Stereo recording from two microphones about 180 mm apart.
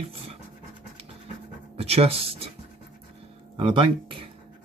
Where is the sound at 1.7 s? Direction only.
35° right (ahead or behind).